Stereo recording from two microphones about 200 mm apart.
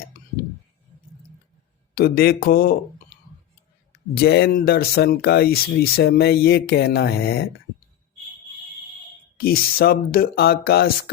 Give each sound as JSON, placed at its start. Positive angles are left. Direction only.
{"t": 2.0, "sound": "speech", "side_deg": 50}
{"t": 4.1, "sound": "speech", "side_deg": 55}
{"t": 9.4, "sound": "speech", "side_deg": 50}